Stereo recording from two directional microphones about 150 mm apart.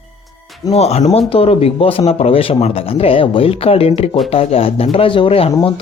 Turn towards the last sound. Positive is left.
turn(degrees=35)  # may be behind; listen again after turning